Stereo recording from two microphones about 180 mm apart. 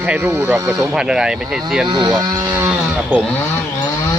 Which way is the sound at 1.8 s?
25° right (ahead or behind).